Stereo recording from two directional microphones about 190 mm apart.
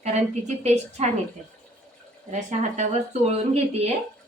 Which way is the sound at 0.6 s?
35° right (ahead or behind).